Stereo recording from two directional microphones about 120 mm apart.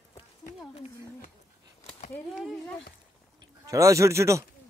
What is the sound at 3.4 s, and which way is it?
Speech, 25° right (ahead or behind).